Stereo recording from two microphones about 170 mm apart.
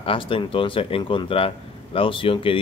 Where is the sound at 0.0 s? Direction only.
30° left (ahead or behind).